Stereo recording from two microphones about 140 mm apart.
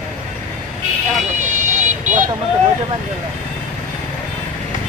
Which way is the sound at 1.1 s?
60° right (ahead or behind).